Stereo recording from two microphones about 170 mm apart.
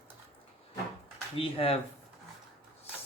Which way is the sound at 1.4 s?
30° left (ahead or behind).